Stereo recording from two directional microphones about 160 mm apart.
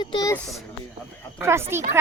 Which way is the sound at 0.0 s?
25° left (ahead or behind).